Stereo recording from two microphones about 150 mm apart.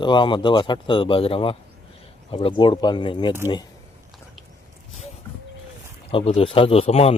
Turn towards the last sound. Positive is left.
turn(degrees=40)  # may be behind; listen again after turning